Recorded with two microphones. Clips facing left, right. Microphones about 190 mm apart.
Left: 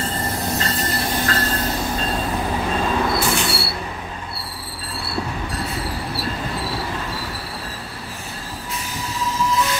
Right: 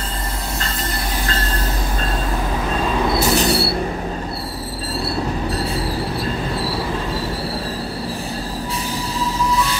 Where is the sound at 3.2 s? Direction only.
40° right (ahead or behind).